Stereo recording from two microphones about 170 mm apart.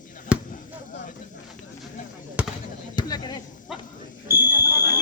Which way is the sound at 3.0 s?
25° left (ahead or behind).